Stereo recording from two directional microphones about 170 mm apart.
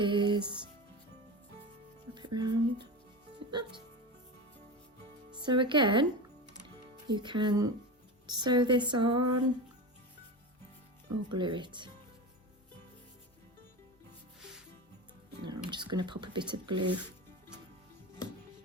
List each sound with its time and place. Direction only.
0.0 s music: 30° right (ahead or behind)
2.1 s speech: 25° right (ahead or behind)
5.4 s speech: 30° right (ahead or behind)
7.1 s speech: 25° right (ahead or behind)
11.3 s speech: 30° right (ahead or behind)
15.4 s speech: 25° right (ahead or behind)